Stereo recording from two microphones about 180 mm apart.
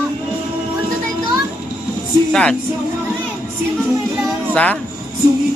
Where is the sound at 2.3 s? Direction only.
5° left (ahead or behind).